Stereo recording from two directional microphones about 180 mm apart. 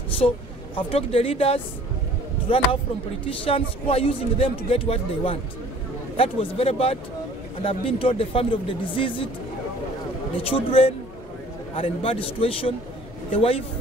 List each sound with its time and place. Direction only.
0.7 s speech: 30° left (ahead or behind)
10.3 s speech: 30° left (ahead or behind)